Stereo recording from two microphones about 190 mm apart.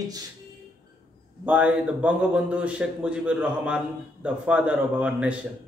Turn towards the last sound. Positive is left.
turn(degrees=-5)  # may be behind; listen again after turning